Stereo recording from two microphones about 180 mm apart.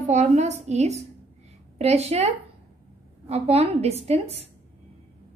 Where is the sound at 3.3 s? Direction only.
35° right (ahead or behind).